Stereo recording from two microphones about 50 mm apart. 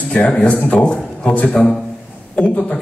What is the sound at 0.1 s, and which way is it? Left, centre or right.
A man's voice, left.